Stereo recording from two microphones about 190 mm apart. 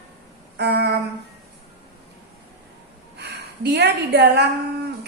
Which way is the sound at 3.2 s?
60° right (ahead or behind).